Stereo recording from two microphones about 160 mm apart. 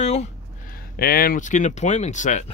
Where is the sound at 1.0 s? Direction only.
70° left (ahead or behind); by 2.5 s 50° left (ahead or behind).